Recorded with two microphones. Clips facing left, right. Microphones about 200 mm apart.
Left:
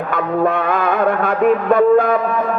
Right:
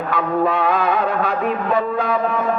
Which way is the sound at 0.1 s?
50° left (ahead or behind).